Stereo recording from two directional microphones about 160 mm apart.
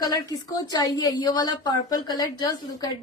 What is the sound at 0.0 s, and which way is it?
A woman's voice, 25° left (ahead or behind).